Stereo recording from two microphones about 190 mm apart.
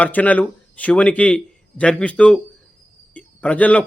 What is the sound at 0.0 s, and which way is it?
A man's voice, 10° left (ahead or behind).